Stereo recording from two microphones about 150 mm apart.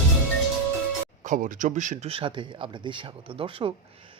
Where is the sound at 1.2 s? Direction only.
60° right (ahead or behind).